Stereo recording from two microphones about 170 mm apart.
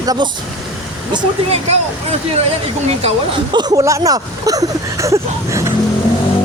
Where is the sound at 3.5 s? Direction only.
20° right (ahead or behind).